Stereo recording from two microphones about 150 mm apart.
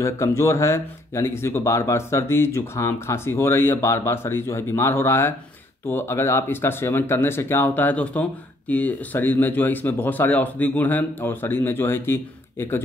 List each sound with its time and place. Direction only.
0.0 s speech: 20° left (ahead or behind)